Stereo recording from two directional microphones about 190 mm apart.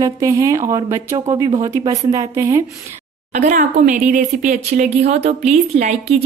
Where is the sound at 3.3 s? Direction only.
40° right (ahead or behind).